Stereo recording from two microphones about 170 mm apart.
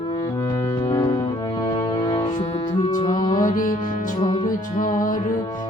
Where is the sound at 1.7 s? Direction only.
30° left (ahead or behind).